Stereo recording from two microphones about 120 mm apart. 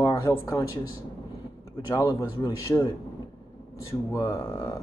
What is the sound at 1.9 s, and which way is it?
Speech, 30° left (ahead or behind).